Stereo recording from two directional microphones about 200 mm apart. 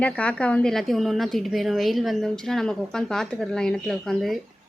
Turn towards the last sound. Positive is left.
turn(degrees=0)  # may be behind; listen again after turning